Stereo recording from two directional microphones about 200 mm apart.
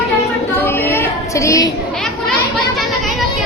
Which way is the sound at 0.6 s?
10° left (ahead or behind).